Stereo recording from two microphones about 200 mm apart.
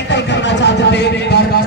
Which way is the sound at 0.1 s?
60° left (ahead or behind).